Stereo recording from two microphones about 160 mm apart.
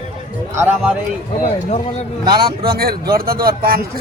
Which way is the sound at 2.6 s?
70° right (ahead or behind).